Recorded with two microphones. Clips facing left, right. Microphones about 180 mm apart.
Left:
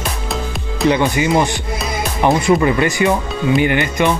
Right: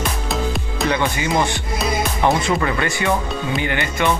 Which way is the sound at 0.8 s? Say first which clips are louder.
Left 6 dB; 15° left (ahead or behind).